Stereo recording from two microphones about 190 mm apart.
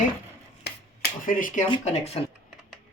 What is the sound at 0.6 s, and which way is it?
Finger snapping, 50° left (ahead or behind).